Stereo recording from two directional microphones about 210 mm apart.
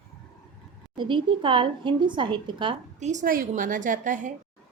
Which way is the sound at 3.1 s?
40° right (ahead or behind).